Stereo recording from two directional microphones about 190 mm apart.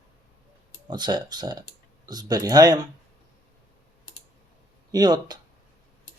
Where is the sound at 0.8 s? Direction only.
25° right (ahead or behind).